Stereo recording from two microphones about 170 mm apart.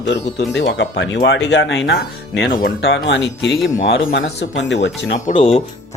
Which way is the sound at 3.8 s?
75° left (ahead or behind).